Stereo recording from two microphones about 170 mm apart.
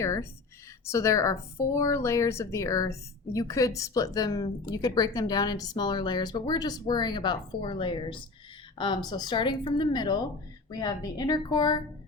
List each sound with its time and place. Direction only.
0.0 s a woman's voice: 15° left (ahead or behind)